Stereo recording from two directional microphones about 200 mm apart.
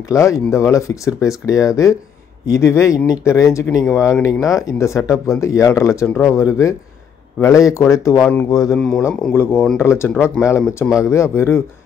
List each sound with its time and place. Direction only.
0.1 s speech: 15° left (ahead or behind)
8.7 s speech: 5° left (ahead or behind)